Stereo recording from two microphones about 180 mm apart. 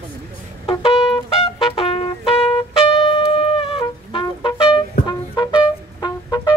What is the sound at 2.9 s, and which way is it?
Brass instrument, 30° left (ahead or behind).